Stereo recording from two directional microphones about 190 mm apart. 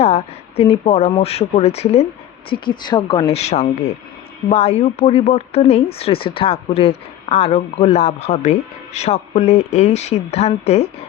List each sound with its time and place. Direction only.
0.0 s a woman's voice: 30° left (ahead or behind)